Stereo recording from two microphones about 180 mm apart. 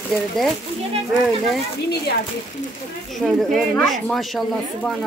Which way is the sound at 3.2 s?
Centre (ahead or behind).